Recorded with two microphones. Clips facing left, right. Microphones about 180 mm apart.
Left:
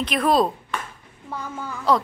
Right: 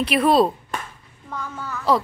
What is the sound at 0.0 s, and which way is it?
Speech, 5° right (ahead or behind).